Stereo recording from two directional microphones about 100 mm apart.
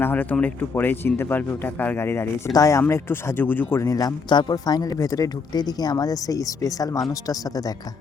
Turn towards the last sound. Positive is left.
turn(degrees=40)  # may be behind; listen again after turning